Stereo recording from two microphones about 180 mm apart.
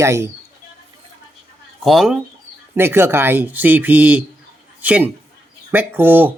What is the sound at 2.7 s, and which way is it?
Speech, 15° right (ahead or behind).